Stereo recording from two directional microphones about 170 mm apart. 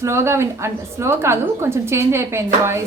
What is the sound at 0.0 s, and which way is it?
A woman's voice, 15° right (ahead or behind).